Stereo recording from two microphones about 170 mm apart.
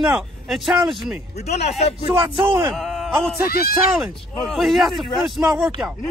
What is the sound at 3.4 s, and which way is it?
Speech, 65° left (ahead or behind).